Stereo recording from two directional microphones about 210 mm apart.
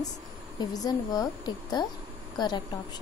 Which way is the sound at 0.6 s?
20° left (ahead or behind).